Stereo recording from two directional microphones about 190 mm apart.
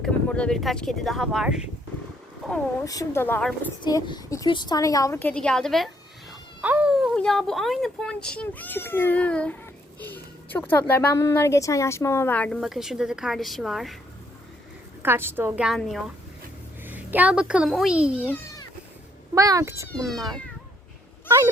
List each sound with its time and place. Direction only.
0.0 s speech: 5° left (ahead or behind)
2.8 s a woman's voice: 15° left (ahead or behind)
3.8 s a woman's voice: 20° left (ahead or behind); by 13.9 s centre (ahead or behind)
15.0 s a woman's voice: 10° right (ahead or behind)
18.2 s a child's voice: 10° left (ahead or behind)
19.3 s a woman's voice: 15° right (ahead or behind)
19.9 s speech: centre (ahead or behind)